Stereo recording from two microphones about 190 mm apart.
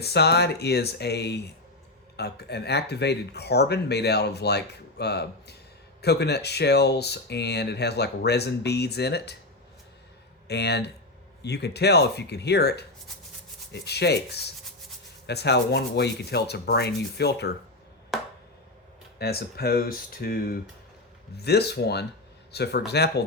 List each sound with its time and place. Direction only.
0.0 s speech: 60° left (ahead or behind)
10.5 s speech: 60° left (ahead or behind)
13.8 s speech: 60° left (ahead or behind)
18.1 s a sound: centre (ahead or behind)
19.2 s speech: 55° left (ahead or behind)